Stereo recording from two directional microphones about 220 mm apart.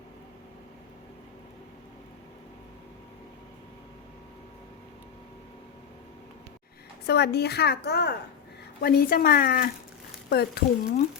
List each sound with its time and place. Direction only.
7.1 s a woman's voice: 50° left (ahead or behind)